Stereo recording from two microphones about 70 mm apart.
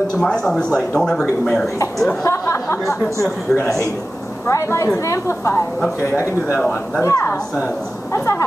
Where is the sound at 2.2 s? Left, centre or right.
Left.